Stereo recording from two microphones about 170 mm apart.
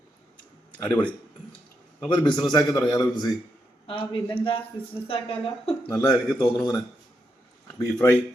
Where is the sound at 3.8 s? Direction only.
30° left (ahead or behind).